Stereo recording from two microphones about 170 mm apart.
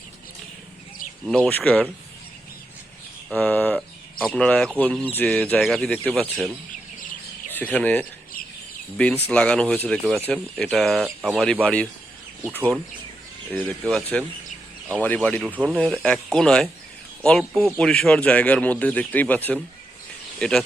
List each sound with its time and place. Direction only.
1.2 s speech: 5° left (ahead or behind)
3.3 s speech: 10° left (ahead or behind)
7.5 s speech: 10° left (ahead or behind)
13.9 s speech: 5° left (ahead or behind)